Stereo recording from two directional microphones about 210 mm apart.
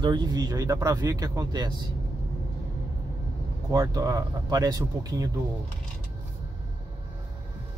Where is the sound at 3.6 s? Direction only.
15° right (ahead or behind).